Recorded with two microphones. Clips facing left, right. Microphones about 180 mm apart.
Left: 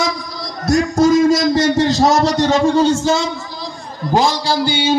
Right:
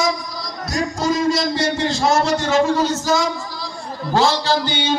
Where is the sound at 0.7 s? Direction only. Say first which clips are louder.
Left 9 dB; 45° left (ahead or behind); by 3.3 s 25° left (ahead or behind).